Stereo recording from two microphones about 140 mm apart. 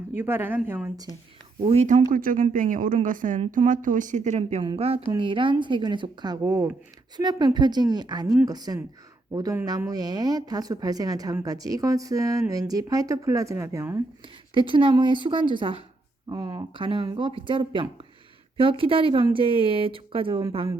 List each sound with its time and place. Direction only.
0.2 s speech: 15° right (ahead or behind)
1.6 s speech: 50° right (ahead or behind); by 14.0 s 20° right (ahead or behind)
14.5 s speech: 35° right (ahead or behind)